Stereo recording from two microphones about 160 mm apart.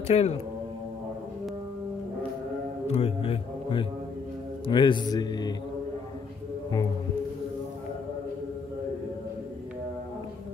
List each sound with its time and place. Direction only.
0.1 s speech: 40° left (ahead or behind)
2.9 s speech: 35° left (ahead or behind)